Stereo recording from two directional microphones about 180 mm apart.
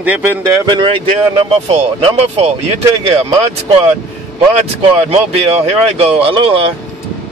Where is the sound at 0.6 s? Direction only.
25° right (ahead or behind).